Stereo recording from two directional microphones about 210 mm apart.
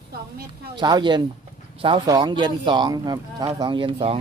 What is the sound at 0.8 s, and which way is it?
Speech, 20° right (ahead or behind).